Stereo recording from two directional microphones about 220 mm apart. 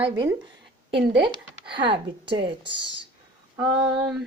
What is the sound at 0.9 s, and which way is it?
Speech, 50° right (ahead or behind).